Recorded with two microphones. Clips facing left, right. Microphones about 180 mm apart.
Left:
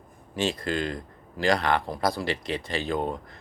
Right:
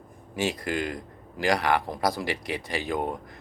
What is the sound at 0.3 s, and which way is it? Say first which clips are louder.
A man's voice: left 1 dB; 15° right (ahead or behind).